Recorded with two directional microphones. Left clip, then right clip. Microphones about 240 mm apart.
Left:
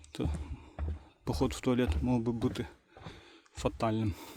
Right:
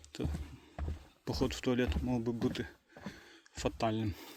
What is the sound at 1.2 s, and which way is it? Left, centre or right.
Speech, centre.